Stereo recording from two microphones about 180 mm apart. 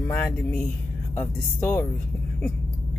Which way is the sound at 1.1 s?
10° left (ahead or behind).